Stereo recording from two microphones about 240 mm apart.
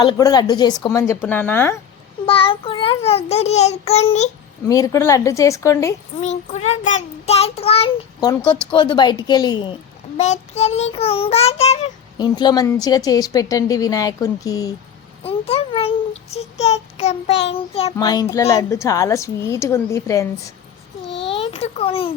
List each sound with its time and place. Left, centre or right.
0.0 s child singing: centre
2.2 s child singing: left
4.7 s child singing: centre
6.2 s child singing: left
15.2 s a child's voice: left
17.9 s child singing: centre
21.2 s a sound: left